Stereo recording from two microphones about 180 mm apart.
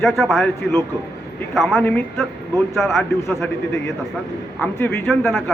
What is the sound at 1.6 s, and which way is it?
A man's voice, centre (ahead or behind).